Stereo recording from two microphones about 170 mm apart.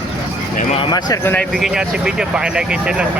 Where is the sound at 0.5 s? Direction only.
35° left (ahead or behind).